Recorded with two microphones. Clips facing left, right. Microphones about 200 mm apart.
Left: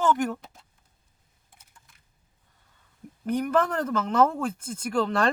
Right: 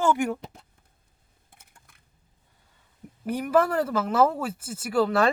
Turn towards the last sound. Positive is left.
turn(degrees=-5)  # may be behind; listen again after turning